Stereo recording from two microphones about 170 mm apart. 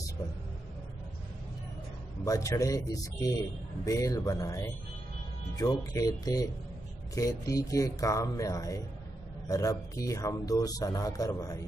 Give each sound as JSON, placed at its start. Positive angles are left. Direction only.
{"t": 2.2, "sound": "a man's voice", "side_deg": 20}